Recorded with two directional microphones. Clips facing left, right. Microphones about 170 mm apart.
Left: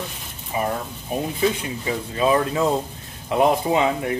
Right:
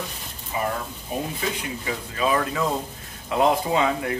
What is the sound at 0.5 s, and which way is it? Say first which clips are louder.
Speech: left 2 dB; 20° left (ahead or behind).